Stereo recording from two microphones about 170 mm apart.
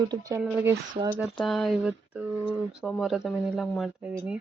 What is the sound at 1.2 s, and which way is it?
Speech, centre (ahead or behind).